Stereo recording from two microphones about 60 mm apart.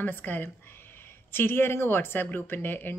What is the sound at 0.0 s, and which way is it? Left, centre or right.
Speech, left.